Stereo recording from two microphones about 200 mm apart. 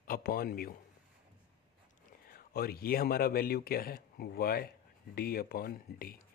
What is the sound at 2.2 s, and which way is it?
Speech, 50° left (ahead or behind).